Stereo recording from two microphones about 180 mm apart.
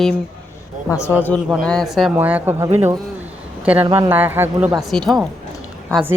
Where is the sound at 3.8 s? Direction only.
15° right (ahead or behind).